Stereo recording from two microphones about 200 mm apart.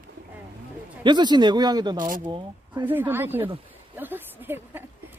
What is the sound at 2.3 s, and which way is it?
Speech, 25° right (ahead or behind).